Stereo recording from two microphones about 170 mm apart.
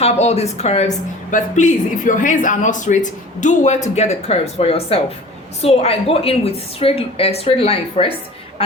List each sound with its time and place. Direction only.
0.0 s a woman's voice: 40° left (ahead or behind)
1.3 s a woman's voice: 50° left (ahead or behind)